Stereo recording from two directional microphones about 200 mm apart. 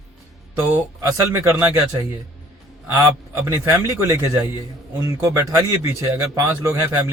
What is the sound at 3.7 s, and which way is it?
Speech, 15° right (ahead or behind).